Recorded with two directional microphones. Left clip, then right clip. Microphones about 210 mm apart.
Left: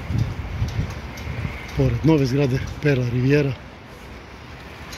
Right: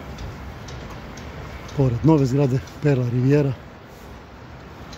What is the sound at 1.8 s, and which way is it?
Speech, 10° right (ahead or behind).